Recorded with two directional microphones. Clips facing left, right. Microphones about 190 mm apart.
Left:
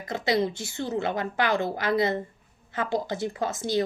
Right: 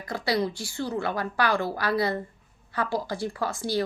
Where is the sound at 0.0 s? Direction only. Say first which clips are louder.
Left 2 dB; 20° left (ahead or behind).